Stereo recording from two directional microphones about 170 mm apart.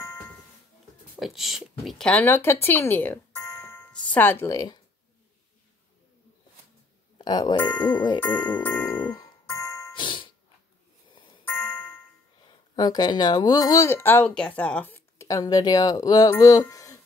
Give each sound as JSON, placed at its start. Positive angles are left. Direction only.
{"t": 0.0, "sound": "music", "side_deg": 15}
{"t": 1.2, "sound": "speech", "side_deg": 0}
{"t": 7.2, "sound": "speech", "side_deg": 25}
{"t": 7.6, "sound": "speech", "side_deg": 10}
{"t": 9.1, "sound": "music", "side_deg": 20}
{"t": 10.0, "sound": "ding", "side_deg": 30}
{"t": 11.4, "sound": "a sound", "side_deg": 10}
{"t": 12.7, "sound": "speech", "side_deg": 25}